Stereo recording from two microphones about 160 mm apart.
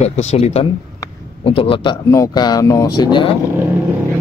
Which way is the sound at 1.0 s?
20° left (ahead or behind).